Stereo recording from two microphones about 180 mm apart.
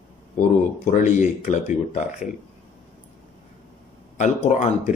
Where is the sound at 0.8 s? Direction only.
45° left (ahead or behind).